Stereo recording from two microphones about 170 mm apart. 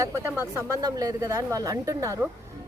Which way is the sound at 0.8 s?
20° right (ahead or behind).